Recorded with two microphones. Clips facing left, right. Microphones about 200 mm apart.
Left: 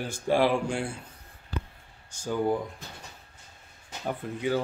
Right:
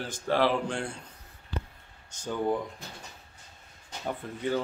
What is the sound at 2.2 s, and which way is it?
Speech, 10° left (ahead or behind).